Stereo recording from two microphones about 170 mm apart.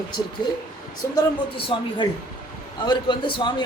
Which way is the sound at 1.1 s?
30° left (ahead or behind).